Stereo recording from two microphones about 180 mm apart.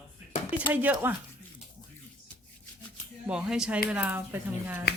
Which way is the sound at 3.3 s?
5° right (ahead or behind).